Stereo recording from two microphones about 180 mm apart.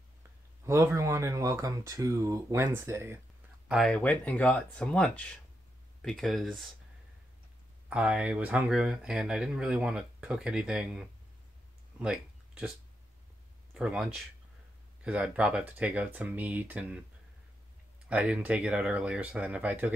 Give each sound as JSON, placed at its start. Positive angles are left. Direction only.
{"t": 0.7, "sound": "speech", "side_deg": -15}
{"t": 3.6, "sound": "speech", "side_deg": 0}
{"t": 7.9, "sound": "speech", "side_deg": -5}
{"t": 12.0, "sound": "a sound", "side_deg": -5}
{"t": 13.7, "sound": "speech", "side_deg": -5}
{"t": 18.0, "sound": "speech", "side_deg": -5}